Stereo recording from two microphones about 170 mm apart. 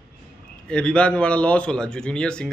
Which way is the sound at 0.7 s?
5° left (ahead or behind).